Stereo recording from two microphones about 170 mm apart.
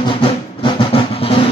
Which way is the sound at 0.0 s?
30° left (ahead or behind).